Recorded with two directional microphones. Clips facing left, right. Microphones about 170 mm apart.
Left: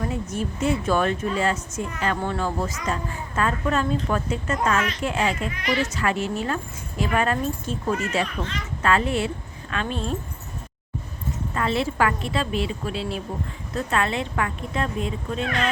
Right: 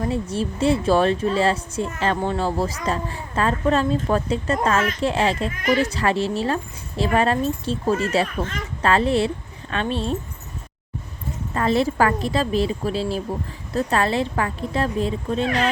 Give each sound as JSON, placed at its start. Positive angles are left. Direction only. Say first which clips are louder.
{"t": 0.0, "sound": "a woman's voice", "louder": "right 4 dB", "side_deg": -30}
{"t": 11.5, "sound": "a woman's voice", "louder": "right 5 dB", "side_deg": -40}